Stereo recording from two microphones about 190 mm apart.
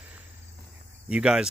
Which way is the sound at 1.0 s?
5° right (ahead or behind).